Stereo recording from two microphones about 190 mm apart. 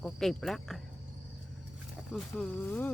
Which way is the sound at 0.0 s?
Centre (ahead or behind).